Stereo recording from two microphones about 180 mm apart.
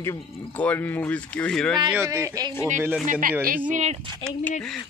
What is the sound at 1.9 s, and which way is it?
Speech, 15° right (ahead or behind).